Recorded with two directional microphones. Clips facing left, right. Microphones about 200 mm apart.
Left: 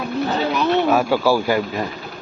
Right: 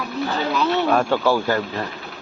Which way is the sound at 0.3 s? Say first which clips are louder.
Left 2 dB; 20° left (ahead or behind).